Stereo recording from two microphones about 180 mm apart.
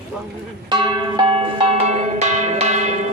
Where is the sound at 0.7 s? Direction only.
25° right (ahead or behind); by 3.1 s 40° right (ahead or behind).